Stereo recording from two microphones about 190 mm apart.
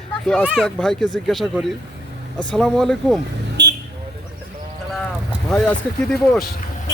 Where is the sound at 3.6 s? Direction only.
65° right (ahead or behind).